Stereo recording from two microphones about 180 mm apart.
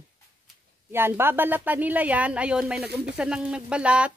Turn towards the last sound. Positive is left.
turn(degrees=-5)  # may be behind; listen again after turning